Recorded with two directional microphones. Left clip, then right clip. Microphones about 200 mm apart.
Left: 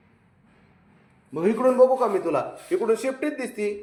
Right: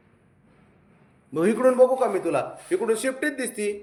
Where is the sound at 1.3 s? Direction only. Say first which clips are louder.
Right 1 dB; 25° right (ahead or behind).